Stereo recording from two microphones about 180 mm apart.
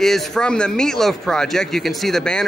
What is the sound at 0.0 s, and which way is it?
Speech, centre (ahead or behind).